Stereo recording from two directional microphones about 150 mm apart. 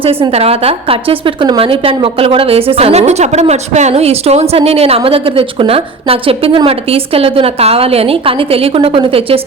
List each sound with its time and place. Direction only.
0.0 s a woman's voice: 40° right (ahead or behind)